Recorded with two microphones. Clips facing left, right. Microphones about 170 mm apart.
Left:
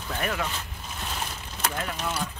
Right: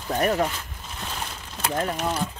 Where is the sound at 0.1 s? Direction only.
40° right (ahead or behind).